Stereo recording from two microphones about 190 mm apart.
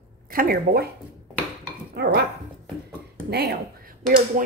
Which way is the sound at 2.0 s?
60° right (ahead or behind).